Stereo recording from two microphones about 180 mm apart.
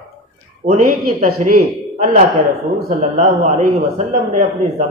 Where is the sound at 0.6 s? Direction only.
90° right.